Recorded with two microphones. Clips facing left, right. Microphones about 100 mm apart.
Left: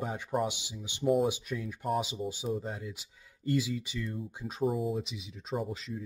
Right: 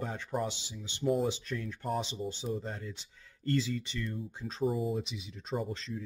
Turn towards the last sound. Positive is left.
turn(degrees=10)  # may be behind; listen again after turning